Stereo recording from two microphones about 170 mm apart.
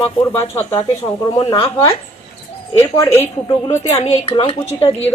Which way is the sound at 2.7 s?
15° left (ahead or behind).